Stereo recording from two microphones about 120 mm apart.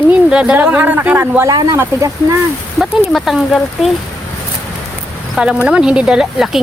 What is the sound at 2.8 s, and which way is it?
Speech, centre (ahead or behind).